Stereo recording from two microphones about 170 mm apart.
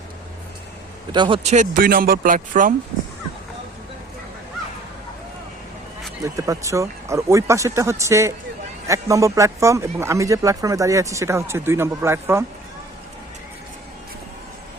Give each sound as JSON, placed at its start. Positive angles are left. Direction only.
{"t": 1.1, "sound": "speech", "side_deg": -30}
{"t": 1.5, "sound": "speech", "side_deg": -50}
{"t": 6.2, "sound": "speech", "side_deg": -20}